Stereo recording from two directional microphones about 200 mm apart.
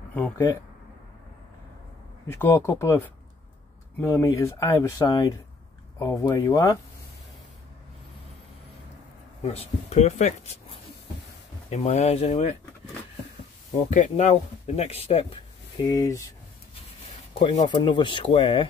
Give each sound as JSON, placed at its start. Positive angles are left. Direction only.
{"t": 2.3, "sound": "speech", "side_deg": 10}
{"t": 9.4, "sound": "speech", "side_deg": 30}
{"t": 13.8, "sound": "speech", "side_deg": 35}
{"t": 15.8, "sound": "speech", "side_deg": 20}
{"t": 17.4, "sound": "speech", "side_deg": 25}